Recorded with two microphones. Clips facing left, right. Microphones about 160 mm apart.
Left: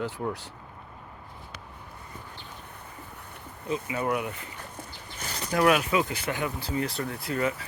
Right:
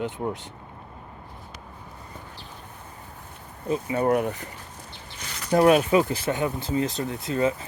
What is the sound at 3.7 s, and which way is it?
Speech, 40° right (ahead or behind).